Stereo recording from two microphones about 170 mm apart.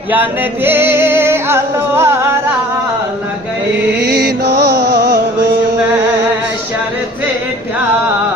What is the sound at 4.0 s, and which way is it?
Music, 75° right (ahead or behind).